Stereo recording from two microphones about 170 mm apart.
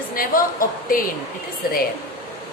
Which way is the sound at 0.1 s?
55° left (ahead or behind).